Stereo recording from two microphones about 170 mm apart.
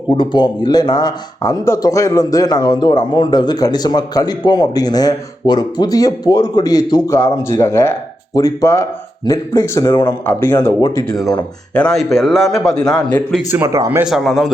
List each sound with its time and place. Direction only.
0.2 s speech: 25° left (ahead or behind)
11.7 s a man's voice: 5° left (ahead or behind)
13.5 s speech: 15° right (ahead or behind)
14.0 s a man's voice: centre (ahead or behind)